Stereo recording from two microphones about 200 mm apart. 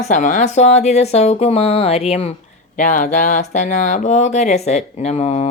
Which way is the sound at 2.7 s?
40° left (ahead or behind).